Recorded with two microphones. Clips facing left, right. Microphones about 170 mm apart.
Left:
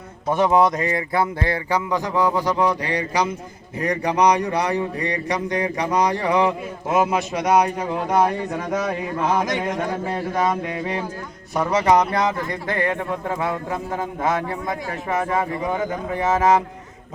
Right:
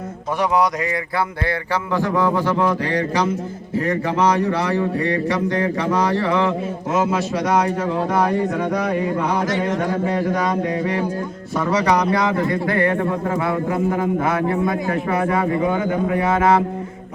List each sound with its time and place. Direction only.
0.3 s a man's voice: 25° left (ahead or behind)
14.7 s a man's voice: 20° left (ahead or behind)